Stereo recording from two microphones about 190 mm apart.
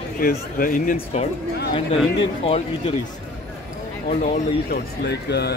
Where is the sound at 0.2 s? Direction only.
50° left (ahead or behind).